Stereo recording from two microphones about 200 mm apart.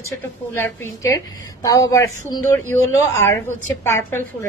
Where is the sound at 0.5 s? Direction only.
10° left (ahead or behind).